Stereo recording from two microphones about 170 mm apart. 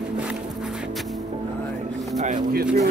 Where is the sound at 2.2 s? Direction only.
50° right (ahead or behind).